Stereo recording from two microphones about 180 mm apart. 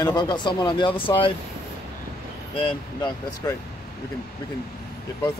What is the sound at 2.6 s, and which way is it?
Speech, 30° left (ahead or behind).